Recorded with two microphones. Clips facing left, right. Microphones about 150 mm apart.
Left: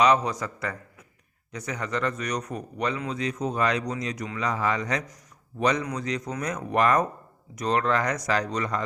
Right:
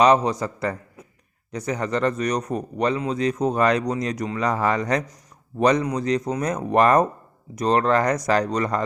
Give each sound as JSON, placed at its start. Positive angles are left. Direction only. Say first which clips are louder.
{"t": 0.0, "sound": "speech", "louder": "right 4 dB", "side_deg": -30}